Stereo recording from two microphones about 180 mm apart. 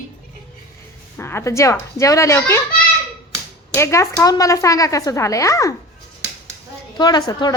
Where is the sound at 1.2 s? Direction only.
15° left (ahead or behind).